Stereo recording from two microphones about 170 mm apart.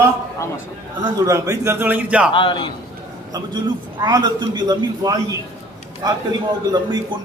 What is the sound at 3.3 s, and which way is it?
A man's voice, 25° right (ahead or behind).